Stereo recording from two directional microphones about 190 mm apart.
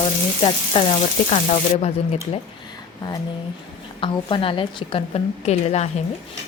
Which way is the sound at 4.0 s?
25° left (ahead or behind).